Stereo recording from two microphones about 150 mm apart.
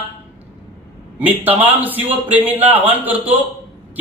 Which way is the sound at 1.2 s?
10° right (ahead or behind).